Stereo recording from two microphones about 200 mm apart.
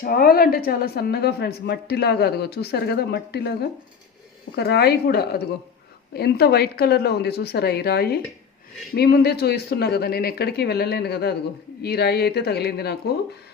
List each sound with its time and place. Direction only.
0.0 s speech: 45° left (ahead or behind)
4.5 s speech: 55° left (ahead or behind)